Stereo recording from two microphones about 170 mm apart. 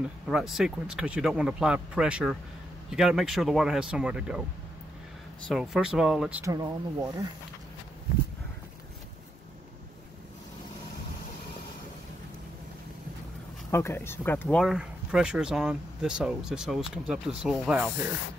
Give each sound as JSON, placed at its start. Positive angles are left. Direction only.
{"t": 0.3, "sound": "speech", "side_deg": 0}
{"t": 5.5, "sound": "speech", "side_deg": 0}
{"t": 6.4, "sound": "speech", "side_deg": -20}
{"t": 13.7, "sound": "speech", "side_deg": 15}